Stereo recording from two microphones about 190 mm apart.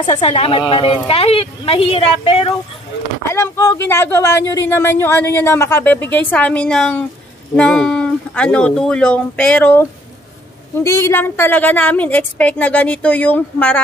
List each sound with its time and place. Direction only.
0.0 s speech: 30° left (ahead or behind)
3.3 s speech: 15° left (ahead or behind)